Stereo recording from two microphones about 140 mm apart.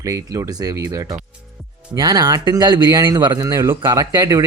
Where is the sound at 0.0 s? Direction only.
25° right (ahead or behind).